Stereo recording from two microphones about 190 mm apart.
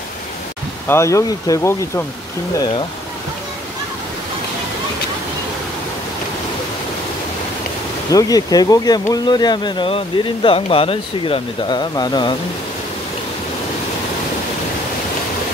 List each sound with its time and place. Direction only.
0.8 s speech: 15° left (ahead or behind)
8.1 s speech: 20° left (ahead or behind)